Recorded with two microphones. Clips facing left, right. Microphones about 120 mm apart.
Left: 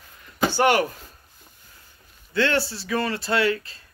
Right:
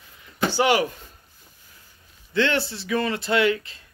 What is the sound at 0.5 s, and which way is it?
Speech, 50° left (ahead or behind).